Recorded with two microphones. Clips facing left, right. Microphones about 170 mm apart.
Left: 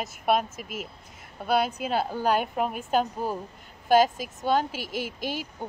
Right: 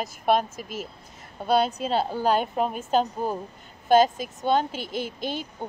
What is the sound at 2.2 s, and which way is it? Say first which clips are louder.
Speech: right 1 dB; 10° left (ahead or behind).